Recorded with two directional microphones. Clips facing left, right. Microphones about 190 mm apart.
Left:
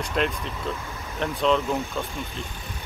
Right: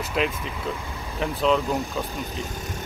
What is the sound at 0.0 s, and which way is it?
Speech, 5° right (ahead or behind).